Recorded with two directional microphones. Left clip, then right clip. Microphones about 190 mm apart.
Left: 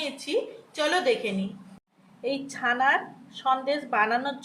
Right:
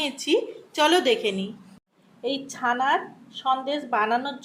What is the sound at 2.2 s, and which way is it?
A woman's voice, 15° right (ahead or behind).